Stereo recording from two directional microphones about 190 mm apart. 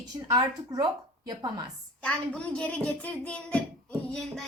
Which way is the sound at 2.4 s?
5° left (ahead or behind).